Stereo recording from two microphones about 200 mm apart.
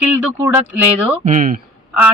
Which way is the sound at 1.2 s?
40° right (ahead or behind).